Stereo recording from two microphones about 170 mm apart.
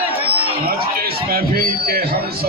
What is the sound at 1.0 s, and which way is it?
A man's voice, 65° right (ahead or behind).